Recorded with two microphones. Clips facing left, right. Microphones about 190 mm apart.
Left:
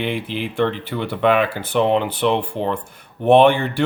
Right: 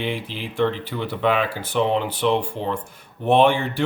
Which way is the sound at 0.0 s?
60° left (ahead or behind).